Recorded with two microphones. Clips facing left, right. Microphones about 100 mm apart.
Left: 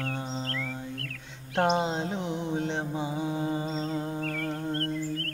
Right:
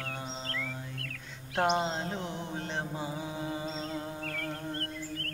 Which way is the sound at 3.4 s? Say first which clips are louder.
Left 5 dB; 25° left (ahead or behind).